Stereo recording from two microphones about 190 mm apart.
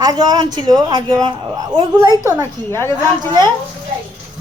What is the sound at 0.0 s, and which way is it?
Speech, 20° right (ahead or behind).